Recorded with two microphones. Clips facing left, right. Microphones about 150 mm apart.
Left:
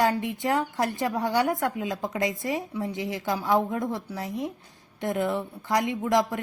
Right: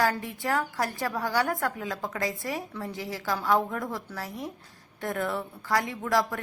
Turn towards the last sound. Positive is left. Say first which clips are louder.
# left 3 dB
turn(degrees=20)  # may be behind; listen again after turning